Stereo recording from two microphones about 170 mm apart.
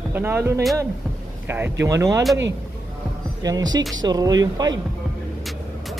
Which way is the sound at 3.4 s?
20° right (ahead or behind).